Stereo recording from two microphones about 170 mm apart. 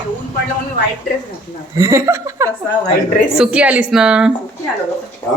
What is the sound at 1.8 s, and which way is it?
Speech, 15° right (ahead or behind).